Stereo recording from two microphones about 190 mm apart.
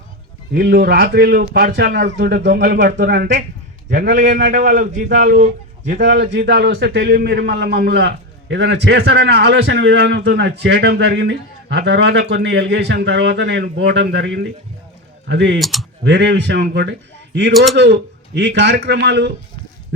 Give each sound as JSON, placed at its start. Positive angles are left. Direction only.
{"t": 0.5, "sound": "a man's voice", "side_deg": -60}
{"t": 6.0, "sound": "a man's voice", "side_deg": -70}
{"t": 15.6, "sound": "speech", "side_deg": 0}
{"t": 16.0, "sound": "a man's voice", "side_deg": -65}